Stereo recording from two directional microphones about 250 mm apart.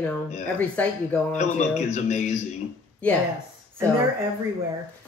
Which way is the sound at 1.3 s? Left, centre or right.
Left.